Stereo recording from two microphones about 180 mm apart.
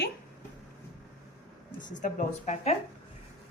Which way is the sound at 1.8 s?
45° left (ahead or behind).